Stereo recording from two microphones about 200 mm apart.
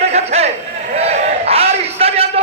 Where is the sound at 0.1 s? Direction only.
35° right (ahead or behind).